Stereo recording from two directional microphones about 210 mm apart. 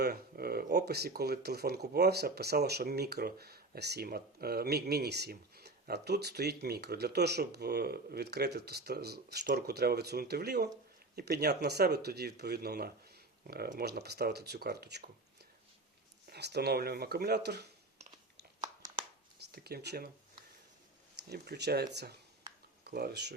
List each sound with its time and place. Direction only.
0.0 s speech: 45° right (ahead or behind)
16.2 s speech: 50° right (ahead or behind)
19.5 s speech: 50° right (ahead or behind)
21.2 s speech: 50° right (ahead or behind)